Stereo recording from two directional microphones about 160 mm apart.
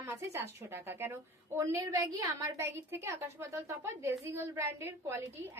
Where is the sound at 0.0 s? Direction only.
15° right (ahead or behind).